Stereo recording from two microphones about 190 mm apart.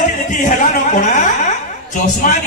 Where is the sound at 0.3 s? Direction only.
40° left (ahead or behind).